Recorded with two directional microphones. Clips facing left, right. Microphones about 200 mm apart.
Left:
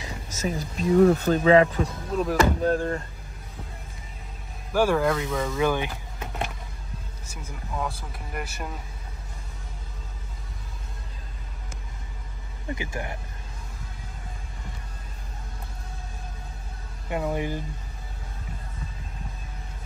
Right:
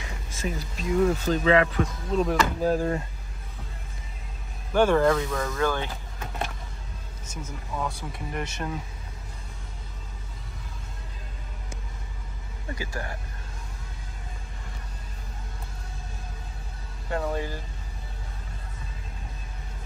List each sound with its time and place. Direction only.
0.0 s speech: 40° left (ahead or behind)
1.1 s speech: 60° left (ahead or behind)
1.4 s speech: 35° left (ahead or behind)
2.1 s speech: centre (ahead or behind)
4.7 s speech: 5° left (ahead or behind)
5.6 s vehicle: 15° left (ahead or behind)
7.2 s speech: 10° left (ahead or behind)
12.7 s speech: 20° left (ahead or behind)
17.1 s speech: 15° left (ahead or behind)